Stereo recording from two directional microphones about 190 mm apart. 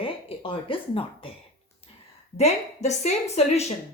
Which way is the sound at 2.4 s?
35° left (ahead or behind).